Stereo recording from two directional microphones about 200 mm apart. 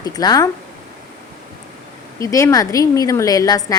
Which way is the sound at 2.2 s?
15° left (ahead or behind).